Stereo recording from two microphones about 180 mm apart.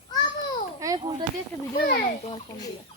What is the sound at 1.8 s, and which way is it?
Speech, 60° left (ahead or behind).